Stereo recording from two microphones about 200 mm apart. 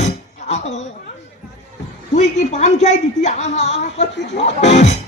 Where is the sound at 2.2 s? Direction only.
35° left (ahead or behind).